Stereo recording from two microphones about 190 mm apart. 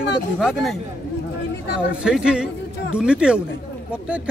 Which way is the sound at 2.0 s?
5° right (ahead or behind).